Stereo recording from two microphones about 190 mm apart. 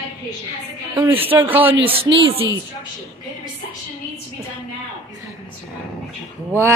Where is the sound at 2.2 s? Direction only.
30° right (ahead or behind).